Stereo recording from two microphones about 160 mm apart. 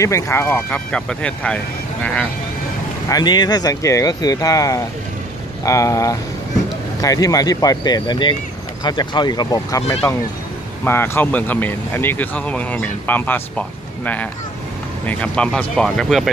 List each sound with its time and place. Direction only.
0.0 s speech: 15° left (ahead or behind)
3.1 s speech: 25° left (ahead or behind); by 16.3 s centre (ahead or behind)